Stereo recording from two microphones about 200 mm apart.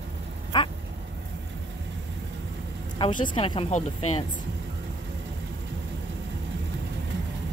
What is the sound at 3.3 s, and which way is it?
Speech, 25° left (ahead or behind).